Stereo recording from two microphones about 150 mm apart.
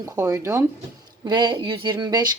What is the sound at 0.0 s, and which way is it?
Speech, 20° right (ahead or behind).